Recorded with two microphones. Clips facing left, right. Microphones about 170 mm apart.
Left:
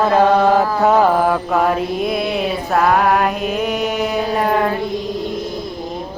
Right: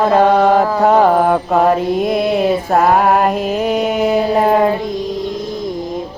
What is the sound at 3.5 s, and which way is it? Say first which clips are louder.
Mantra: right 4 dB; 50° right (ahead or behind).